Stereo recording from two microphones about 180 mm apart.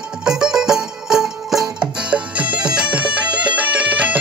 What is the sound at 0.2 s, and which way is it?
Music, 5° right (ahead or behind).